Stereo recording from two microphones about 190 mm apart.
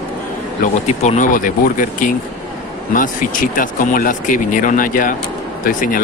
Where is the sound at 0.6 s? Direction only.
35° left (ahead or behind).